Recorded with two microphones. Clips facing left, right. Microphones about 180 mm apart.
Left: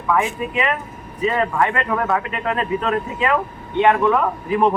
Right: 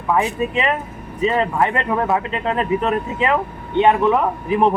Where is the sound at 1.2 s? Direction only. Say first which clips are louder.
Right 1 dB; 20° right (ahead or behind).